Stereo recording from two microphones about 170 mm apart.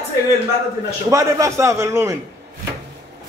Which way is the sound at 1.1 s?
20° right (ahead or behind).